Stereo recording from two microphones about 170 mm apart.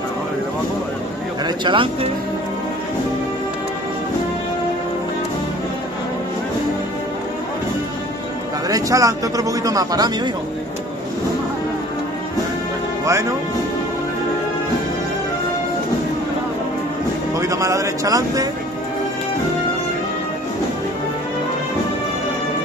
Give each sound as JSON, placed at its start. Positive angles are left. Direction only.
{"t": 1.4, "sound": "speech", "side_deg": -25}
{"t": 8.6, "sound": "speech", "side_deg": -20}
{"t": 13.0, "sound": "speech", "side_deg": -15}
{"t": 17.4, "sound": "speech", "side_deg": -20}